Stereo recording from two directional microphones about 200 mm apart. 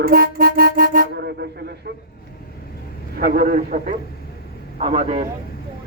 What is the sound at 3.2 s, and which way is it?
A man's voice, 50° right (ahead or behind).